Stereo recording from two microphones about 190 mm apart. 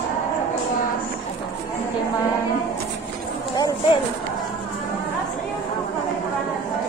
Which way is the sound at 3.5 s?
20° left (ahead or behind).